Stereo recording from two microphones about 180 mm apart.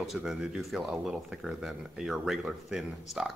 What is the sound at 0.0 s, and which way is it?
A man's voice, 5° right (ahead or behind).